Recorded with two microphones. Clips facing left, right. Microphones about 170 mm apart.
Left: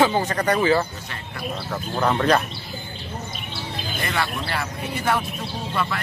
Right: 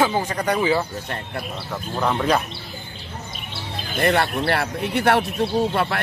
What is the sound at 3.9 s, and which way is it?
Speech, 60° right (ahead or behind).